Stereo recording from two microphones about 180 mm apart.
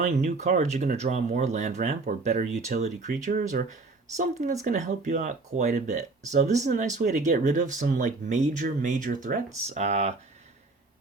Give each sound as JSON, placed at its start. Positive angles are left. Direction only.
{"t": 0.0, "sound": "speech", "side_deg": -40}